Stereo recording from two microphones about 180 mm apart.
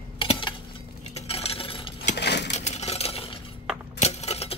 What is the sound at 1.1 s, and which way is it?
Coin, 35° left (ahead or behind).